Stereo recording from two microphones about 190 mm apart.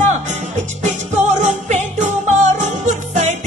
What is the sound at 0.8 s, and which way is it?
Music, 40° right (ahead or behind).